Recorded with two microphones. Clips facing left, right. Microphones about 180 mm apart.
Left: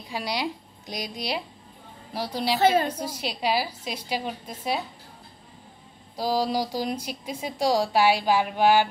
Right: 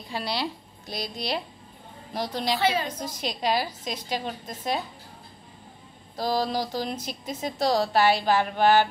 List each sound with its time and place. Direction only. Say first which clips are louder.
0.1 s a woman's voice: left 1 dB; 15° left (ahead or behind)
2.6 s a woman's voice: left 6 dB; 50° left (ahead or behind)
2.9 s a woman's voice: left 1 dB; 10° left (ahead or behind)
6.1 s a woman's voice: left 1 dB; 10° left (ahead or behind)